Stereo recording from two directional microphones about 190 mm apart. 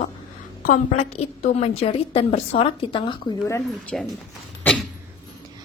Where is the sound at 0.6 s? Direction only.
40° left (ahead or behind).